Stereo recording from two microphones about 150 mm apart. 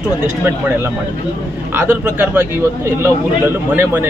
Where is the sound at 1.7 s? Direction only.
15° right (ahead or behind).